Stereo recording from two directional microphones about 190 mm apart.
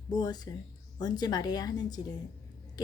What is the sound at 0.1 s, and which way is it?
A woman's voice, 20° left (ahead or behind).